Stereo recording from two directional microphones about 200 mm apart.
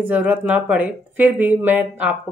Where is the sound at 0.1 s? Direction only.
10° right (ahead or behind).